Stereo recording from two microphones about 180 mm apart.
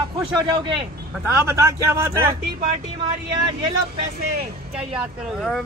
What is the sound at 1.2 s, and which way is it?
Speech, 15° right (ahead or behind).